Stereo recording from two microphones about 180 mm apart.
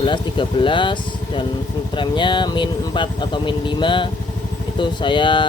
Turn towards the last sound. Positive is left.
turn(degrees=25)  # may be behind; listen again after turning